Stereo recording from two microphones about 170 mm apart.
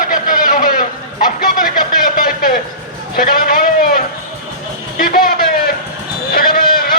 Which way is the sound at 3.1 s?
60° left (ahead or behind).